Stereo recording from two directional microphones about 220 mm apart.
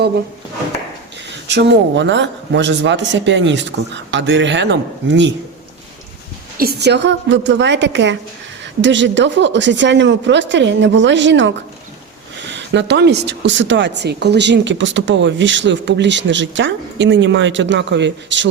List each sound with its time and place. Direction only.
1.5 s a woman's voice: 55° right (ahead or behind)
6.6 s a woman's voice: 45° right (ahead or behind)
12.5 s a woman's voice: 55° right (ahead or behind)